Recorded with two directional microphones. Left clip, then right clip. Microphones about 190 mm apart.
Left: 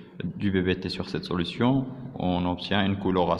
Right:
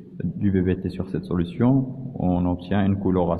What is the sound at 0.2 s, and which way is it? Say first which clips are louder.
Speech: right 3 dB; 5° left (ahead or behind).